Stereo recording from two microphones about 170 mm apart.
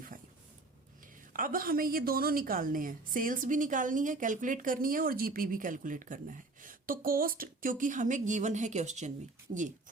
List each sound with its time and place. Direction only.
1.3 s a woman's voice: 55° right (ahead or behind)